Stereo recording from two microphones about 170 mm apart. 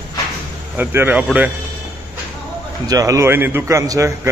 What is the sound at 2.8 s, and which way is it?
A man's voice, 20° right (ahead or behind).